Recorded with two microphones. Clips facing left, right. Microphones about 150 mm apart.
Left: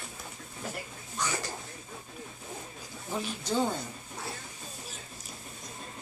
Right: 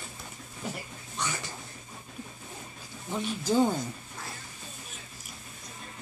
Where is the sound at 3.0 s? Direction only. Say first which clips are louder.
Right 2 dB; 5° left (ahead or behind).